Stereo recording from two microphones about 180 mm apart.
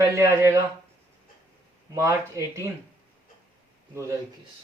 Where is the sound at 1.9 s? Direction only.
15° right (ahead or behind).